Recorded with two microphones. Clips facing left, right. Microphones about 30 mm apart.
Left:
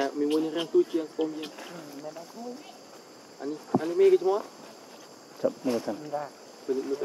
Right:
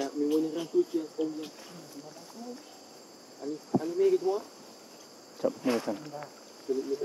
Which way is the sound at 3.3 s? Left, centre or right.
Left.